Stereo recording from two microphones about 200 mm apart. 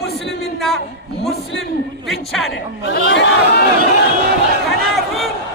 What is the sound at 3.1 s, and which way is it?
Speech, 60° left (ahead or behind).